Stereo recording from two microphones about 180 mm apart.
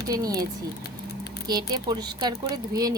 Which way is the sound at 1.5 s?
25° right (ahead or behind).